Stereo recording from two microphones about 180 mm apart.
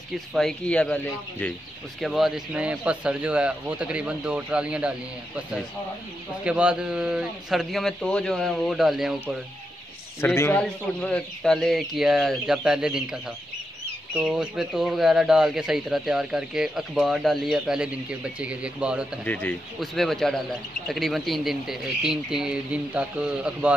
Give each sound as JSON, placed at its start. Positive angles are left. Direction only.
{"t": 0.3, "sound": "speech", "side_deg": 0}
{"t": 6.4, "sound": "speech", "side_deg": -5}
{"t": 10.2, "sound": "a man's voice", "side_deg": 15}
{"t": 19.2, "sound": "a man's voice", "side_deg": 10}